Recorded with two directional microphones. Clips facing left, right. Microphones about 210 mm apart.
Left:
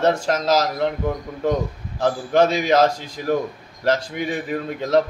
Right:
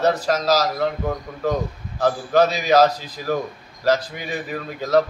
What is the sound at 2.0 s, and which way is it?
Speech, 25° left (ahead or behind).